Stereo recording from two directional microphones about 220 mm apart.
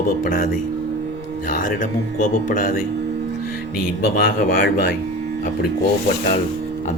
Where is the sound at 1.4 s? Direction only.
35° left (ahead or behind).